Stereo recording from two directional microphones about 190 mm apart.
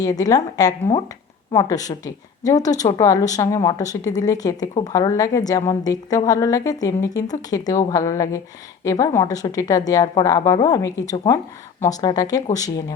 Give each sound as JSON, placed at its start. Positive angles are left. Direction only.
{"t": 0.0, "sound": "a woman's voice", "side_deg": 20}